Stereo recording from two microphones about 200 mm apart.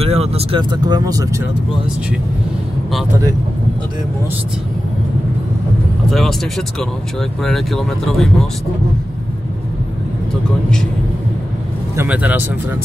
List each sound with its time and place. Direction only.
0.0 s speech: 30° right (ahead or behind)
6.0 s speech: centre (ahead or behind)
12.0 s speech: 5° right (ahead or behind)